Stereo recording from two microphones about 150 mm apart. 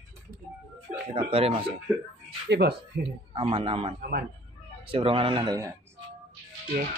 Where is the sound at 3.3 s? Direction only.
35° right (ahead or behind).